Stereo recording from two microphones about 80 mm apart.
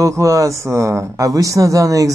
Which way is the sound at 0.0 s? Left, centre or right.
Right.